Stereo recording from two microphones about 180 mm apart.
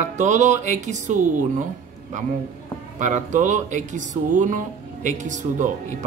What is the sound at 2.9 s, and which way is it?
Speech, 45° right (ahead or behind).